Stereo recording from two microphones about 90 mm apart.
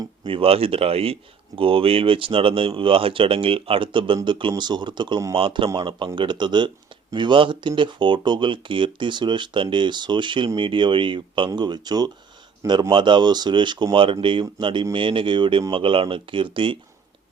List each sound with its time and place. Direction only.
0.3 s speech: 85° right; by 5.2 s 60° right (ahead or behind)
5.3 s speech: 70° right (ahead or behind)
6.1 s speech: 60° right (ahead or behind)
12.9 s speech: 60° right (ahead or behind)
13.9 s speech: 75° right (ahead or behind)